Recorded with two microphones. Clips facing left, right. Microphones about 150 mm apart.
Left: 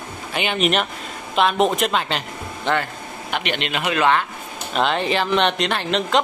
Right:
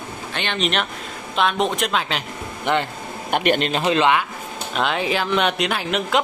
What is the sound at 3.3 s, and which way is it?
Speech, 45° right (ahead or behind).